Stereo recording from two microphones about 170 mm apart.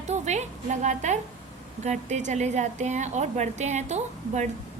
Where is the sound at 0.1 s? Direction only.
45° right (ahead or behind).